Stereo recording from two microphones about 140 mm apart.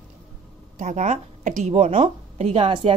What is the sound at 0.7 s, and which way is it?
A woman's voice, 55° right (ahead or behind).